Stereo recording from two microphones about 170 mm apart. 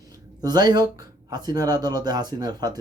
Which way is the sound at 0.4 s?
25° right (ahead or behind).